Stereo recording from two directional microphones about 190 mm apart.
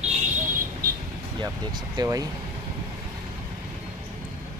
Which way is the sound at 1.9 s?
20° right (ahead or behind).